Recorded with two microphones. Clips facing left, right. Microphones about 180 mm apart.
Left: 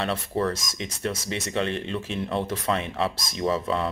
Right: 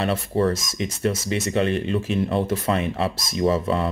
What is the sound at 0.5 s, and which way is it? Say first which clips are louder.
Speech: right 6 dB; 5° right (ahead or behind).